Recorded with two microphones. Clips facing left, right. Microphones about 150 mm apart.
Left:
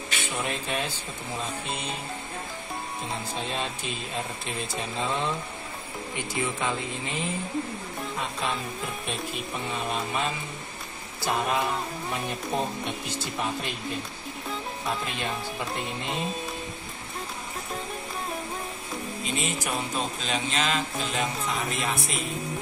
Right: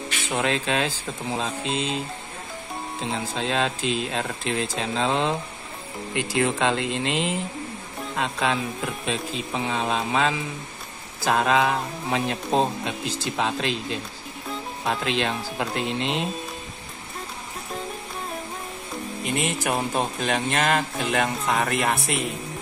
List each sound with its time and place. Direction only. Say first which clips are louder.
0.2 s speech: right 7 dB; 90° right
3.0 s speech: right 7 dB; 90° right
19.2 s speech: right 6 dB; 60° right (ahead or behind)